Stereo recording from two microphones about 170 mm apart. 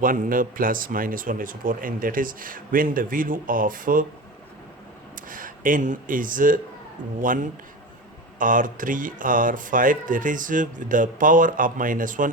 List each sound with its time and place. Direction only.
0.0 s speech: 55° right (ahead or behind)
5.1 s speech: 55° right (ahead or behind)